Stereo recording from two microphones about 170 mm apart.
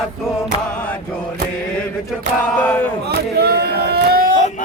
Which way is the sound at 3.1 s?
70° right (ahead or behind).